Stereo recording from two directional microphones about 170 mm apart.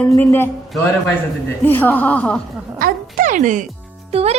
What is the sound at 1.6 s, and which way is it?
Speech, 10° left (ahead or behind).